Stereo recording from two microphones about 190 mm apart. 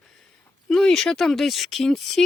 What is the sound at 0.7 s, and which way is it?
Speech, 5° left (ahead or behind).